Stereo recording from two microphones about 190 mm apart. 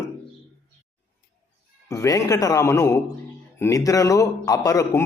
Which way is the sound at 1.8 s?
15° left (ahead or behind).